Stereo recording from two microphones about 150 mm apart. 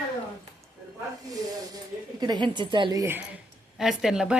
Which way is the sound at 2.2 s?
30° right (ahead or behind).